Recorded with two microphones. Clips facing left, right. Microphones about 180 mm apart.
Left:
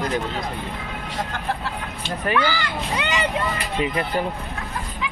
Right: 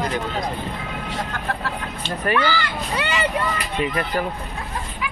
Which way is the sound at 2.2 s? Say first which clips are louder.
Right 1 dB; 10° left (ahead or behind).